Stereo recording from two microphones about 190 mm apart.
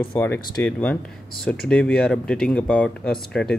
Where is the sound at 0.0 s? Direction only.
10° left (ahead or behind).